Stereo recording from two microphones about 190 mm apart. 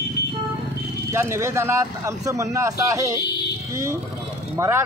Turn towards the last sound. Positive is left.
turn(degrees=-15)  # may be behind; listen again after turning